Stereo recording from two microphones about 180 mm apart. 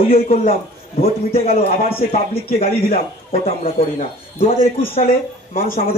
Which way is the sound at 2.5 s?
55° left (ahead or behind).